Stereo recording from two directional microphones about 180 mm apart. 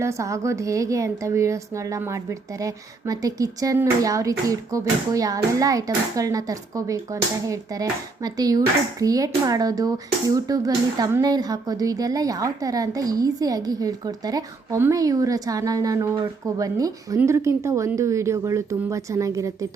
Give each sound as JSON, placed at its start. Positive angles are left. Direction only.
{"t": 0.0, "sound": "a woman's voice", "side_deg": -15}